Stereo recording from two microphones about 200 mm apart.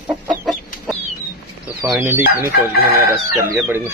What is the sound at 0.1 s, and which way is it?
Chicken, centre (ahead or behind).